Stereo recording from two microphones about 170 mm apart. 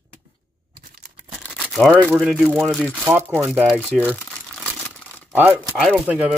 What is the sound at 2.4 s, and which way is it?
Speech, centre (ahead or behind).